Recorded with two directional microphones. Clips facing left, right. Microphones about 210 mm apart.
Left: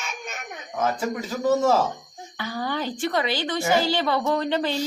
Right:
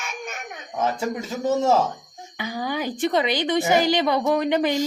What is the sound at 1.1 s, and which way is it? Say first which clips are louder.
A woman's voice: left 1 dB; 25° right (ahead or behind).